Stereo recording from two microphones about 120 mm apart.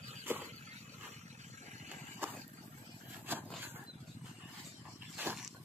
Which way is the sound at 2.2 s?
15° right (ahead or behind).